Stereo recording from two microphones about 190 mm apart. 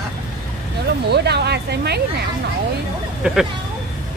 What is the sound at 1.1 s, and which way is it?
Speech, 60° right (ahead or behind).